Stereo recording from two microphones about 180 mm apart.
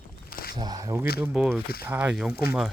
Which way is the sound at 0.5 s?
20° right (ahead or behind).